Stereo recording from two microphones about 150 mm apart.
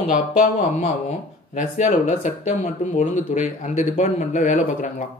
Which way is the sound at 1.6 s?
50° left (ahead or behind).